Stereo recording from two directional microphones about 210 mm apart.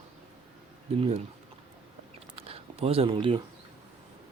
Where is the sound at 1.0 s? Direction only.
25° right (ahead or behind).